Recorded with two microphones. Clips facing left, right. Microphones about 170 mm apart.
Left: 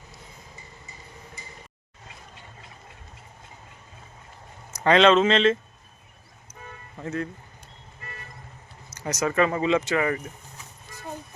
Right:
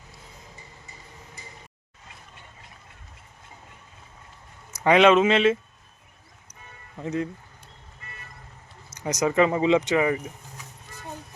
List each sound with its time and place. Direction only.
4.7 s speech: 10° right (ahead or behind)
6.9 s speech: 15° right (ahead or behind)
9.0 s speech: 15° right (ahead or behind)